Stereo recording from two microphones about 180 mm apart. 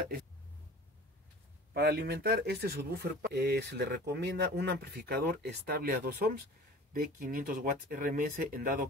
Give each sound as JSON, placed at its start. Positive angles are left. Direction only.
{"t": 1.7, "sound": "speech", "side_deg": -60}